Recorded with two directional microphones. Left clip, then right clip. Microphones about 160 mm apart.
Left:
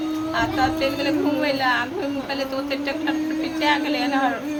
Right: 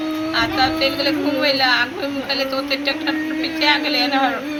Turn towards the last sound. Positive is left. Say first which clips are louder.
# right 4 dB
turn(degrees=20)  # may be behind; listen again after turning